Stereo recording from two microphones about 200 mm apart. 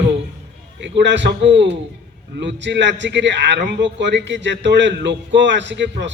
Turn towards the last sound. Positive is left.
turn(degrees=-60)  # may be behind; listen again after turning